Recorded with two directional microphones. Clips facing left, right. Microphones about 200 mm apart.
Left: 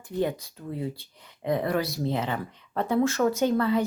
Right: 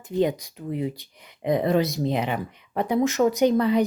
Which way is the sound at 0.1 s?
20° right (ahead or behind).